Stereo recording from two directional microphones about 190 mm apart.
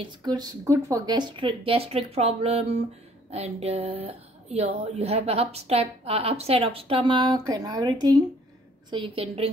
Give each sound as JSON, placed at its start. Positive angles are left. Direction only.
{"t": 0.0, "sound": "speech", "side_deg": -20}